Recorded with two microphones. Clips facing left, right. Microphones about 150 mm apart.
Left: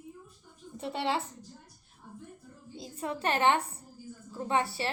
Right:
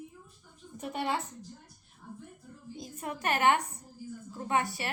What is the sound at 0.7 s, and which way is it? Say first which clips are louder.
Speech: left 1 dB; 25° left (ahead or behind).